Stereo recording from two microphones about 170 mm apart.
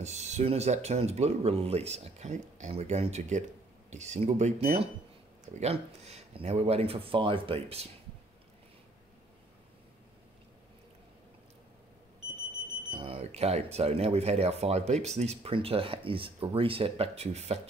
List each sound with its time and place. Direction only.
0.0 s speech: 40° right (ahead or behind)
12.9 s speech: 30° right (ahead or behind)